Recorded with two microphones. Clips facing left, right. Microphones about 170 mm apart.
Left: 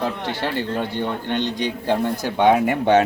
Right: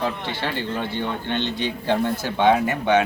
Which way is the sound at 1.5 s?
40° left (ahead or behind).